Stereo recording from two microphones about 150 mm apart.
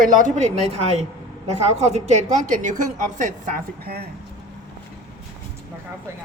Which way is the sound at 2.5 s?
60° right (ahead or behind).